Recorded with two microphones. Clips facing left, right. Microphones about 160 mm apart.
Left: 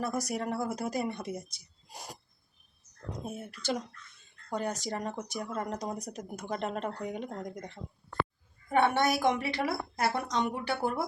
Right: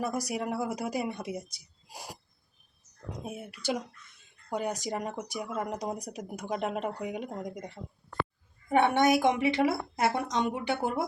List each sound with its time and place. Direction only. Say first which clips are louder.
0.0 s speech: right 1 dB; 10° right (ahead or behind)
3.2 s speech: right 1 dB; 10° right (ahead or behind)
8.7 s a woman's voice: right 3 dB; 20° right (ahead or behind)